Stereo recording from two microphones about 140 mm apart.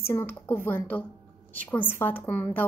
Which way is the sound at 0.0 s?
15° left (ahead or behind).